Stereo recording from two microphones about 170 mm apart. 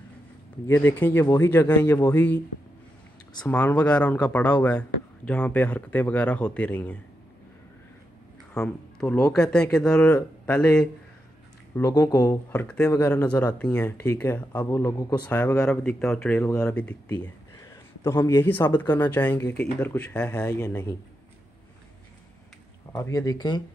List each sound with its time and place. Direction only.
0.7 s speech: 15° left (ahead or behind)
3.4 s speech: 10° left (ahead or behind)
8.5 s speech: 5° left (ahead or behind)
12.6 s speech: 5° left (ahead or behind)
15.2 s speech: 10° left (ahead or behind)
22.9 s speech: 15° left (ahead or behind)